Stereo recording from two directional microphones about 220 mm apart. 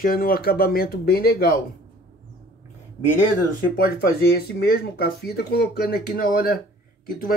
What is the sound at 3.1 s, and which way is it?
Speech, 40° left (ahead or behind).